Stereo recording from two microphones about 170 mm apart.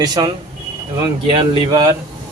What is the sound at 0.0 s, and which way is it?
Speech, 25° right (ahead or behind).